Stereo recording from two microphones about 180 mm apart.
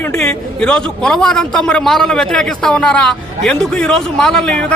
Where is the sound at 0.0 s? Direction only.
10° left (ahead or behind).